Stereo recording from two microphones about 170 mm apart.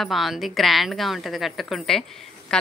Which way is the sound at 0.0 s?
Centre (ahead or behind).